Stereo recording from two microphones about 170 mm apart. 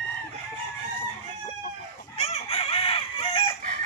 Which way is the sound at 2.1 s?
35° left (ahead or behind).